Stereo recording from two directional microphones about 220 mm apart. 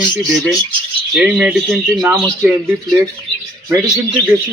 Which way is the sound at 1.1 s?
5° right (ahead or behind).